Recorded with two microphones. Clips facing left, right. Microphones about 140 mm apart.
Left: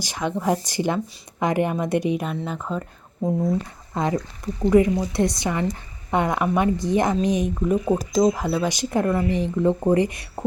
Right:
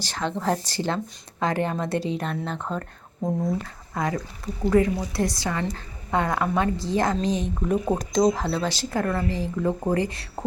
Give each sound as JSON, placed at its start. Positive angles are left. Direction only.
{"t": 0.0, "sound": "speech", "side_deg": 10}
{"t": 3.9, "sound": "speech", "side_deg": 25}
{"t": 7.7, "sound": "speech", "side_deg": 5}